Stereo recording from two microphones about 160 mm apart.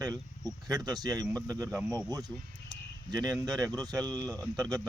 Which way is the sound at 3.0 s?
25° right (ahead or behind).